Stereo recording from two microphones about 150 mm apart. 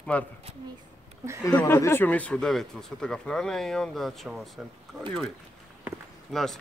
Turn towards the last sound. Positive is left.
turn(degrees=0)  # may be behind; listen again after turning